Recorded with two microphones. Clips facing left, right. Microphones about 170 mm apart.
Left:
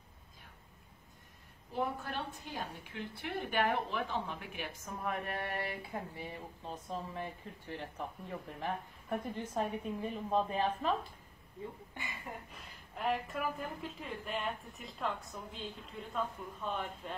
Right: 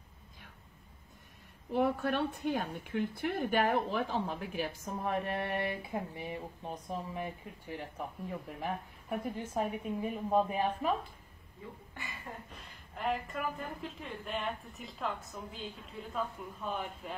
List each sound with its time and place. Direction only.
1.7 s a woman's voice: 70° right (ahead or behind); by 11.0 s 10° right (ahead or behind)
12.9 s a woman's voice: centre (ahead or behind)